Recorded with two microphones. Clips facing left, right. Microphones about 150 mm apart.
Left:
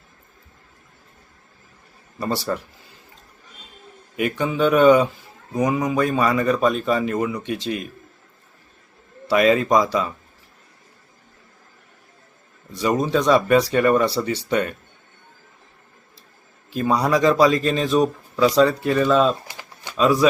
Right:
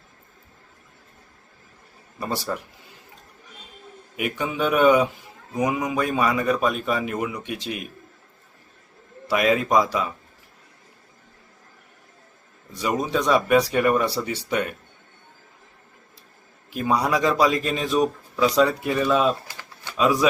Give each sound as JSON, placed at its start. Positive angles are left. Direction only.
{"t": 2.5, "sound": "speech", "side_deg": -5}
{"t": 4.2, "sound": "a man's voice", "side_deg": -10}
{"t": 9.2, "sound": "a man's voice", "side_deg": -10}
{"t": 12.7, "sound": "a man's voice", "side_deg": -10}
{"t": 16.7, "sound": "a man's voice", "side_deg": -10}
{"t": 19.5, "sound": "pigeon", "side_deg": 15}